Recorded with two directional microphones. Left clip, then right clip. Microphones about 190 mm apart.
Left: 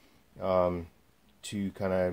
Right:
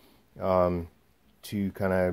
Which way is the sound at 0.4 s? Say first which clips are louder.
Right 3 dB; 25° right (ahead or behind).